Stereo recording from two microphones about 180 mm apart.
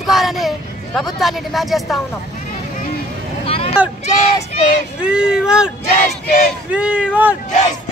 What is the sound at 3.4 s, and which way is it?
Vehicle, 30° left (ahead or behind).